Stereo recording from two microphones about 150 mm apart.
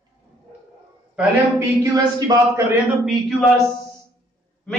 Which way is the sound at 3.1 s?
Centre (ahead or behind).